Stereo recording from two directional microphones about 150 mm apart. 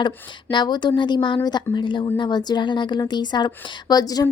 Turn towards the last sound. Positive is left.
turn(degrees=25)  # may be behind; listen again after turning